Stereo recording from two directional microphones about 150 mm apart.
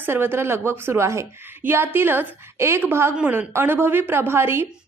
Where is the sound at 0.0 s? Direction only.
15° right (ahead or behind).